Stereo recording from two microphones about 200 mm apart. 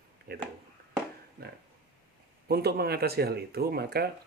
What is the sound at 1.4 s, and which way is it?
Speech, 50° right (ahead or behind).